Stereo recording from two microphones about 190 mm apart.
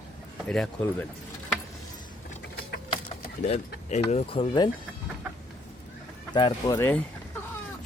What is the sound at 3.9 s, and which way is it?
Speech, 35° left (ahead or behind).